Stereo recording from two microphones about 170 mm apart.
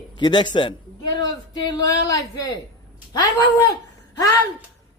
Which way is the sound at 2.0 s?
20° left (ahead or behind).